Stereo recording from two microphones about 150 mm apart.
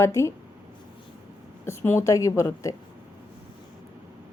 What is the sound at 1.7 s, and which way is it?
A woman's voice, 15° left (ahead or behind).